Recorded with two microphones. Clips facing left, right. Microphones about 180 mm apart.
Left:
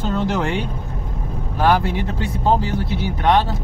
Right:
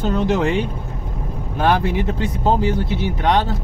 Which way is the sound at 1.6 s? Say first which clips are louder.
Even; 20° right (ahead or behind).